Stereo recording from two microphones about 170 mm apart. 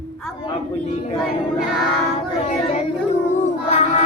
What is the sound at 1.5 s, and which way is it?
Music, centre (ahead or behind).